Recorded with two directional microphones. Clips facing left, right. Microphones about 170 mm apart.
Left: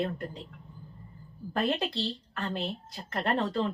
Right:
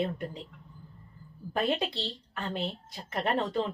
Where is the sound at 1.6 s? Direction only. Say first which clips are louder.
Even; 5° right (ahead or behind).